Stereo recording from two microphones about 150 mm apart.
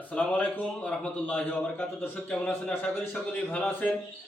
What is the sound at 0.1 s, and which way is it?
A man's voice, 10° left (ahead or behind).